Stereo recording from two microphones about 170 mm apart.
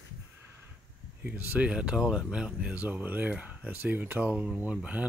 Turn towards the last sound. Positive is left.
turn(degrees=-5)  # may be behind; listen again after turning